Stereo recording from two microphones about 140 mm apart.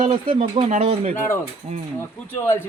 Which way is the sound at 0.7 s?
50° right (ahead or behind).